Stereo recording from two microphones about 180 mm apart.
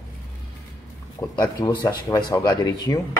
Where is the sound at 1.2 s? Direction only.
20° left (ahead or behind).